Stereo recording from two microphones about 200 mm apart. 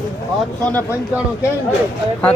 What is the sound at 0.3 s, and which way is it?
Speech, 5° left (ahead or behind).